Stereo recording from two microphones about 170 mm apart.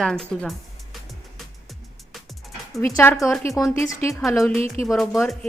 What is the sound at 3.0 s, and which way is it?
Speech, 15° left (ahead or behind).